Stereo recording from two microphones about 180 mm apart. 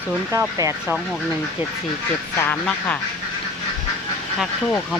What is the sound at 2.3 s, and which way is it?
Speech, 10° left (ahead or behind).